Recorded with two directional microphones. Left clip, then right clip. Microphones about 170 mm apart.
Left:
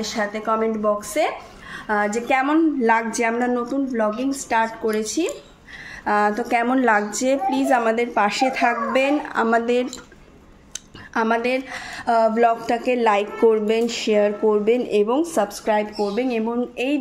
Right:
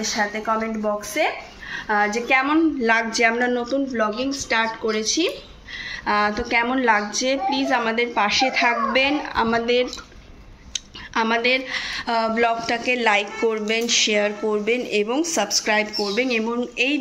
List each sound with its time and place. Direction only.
0.0 s a woman's voice: 80° left
1.1 s a woman's voice: 90° left; by 9.8 s 65° left (ahead or behind)
11.1 s speech: 55° left (ahead or behind); by 16.5 s 30° left (ahead or behind)
16.7 s speech: 45° left (ahead or behind)